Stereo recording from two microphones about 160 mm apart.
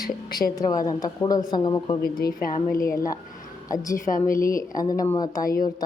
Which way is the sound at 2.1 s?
65° left (ahead or behind).